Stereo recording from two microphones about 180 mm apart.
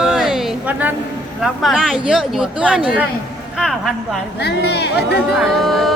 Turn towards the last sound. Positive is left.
turn(degrees=0)  # may be behind; listen again after turning